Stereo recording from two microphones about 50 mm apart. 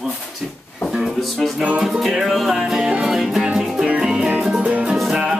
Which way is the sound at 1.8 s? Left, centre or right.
Centre.